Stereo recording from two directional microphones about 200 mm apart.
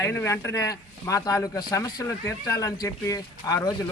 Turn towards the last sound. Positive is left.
turn(degrees=15)  # may be behind; listen again after turning